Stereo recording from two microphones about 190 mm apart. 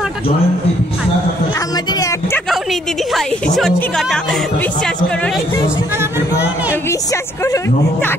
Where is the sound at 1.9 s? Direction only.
15° left (ahead or behind).